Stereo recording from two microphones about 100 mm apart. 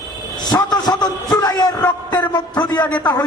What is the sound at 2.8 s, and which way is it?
Speech, 45° left (ahead or behind).